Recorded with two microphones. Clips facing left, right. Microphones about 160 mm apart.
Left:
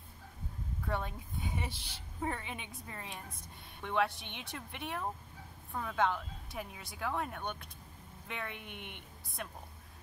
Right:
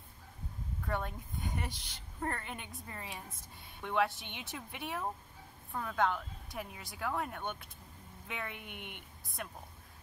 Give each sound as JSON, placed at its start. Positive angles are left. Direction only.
{"t": 0.8, "sound": "a woman's voice", "side_deg": 0}